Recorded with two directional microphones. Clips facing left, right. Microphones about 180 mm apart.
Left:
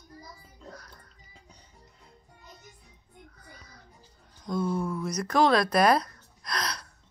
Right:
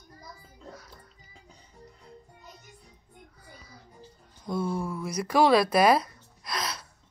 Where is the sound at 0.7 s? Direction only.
5° right (ahead or behind).